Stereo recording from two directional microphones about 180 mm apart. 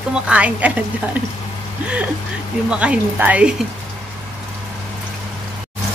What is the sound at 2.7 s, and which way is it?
Speech, 5° right (ahead or behind).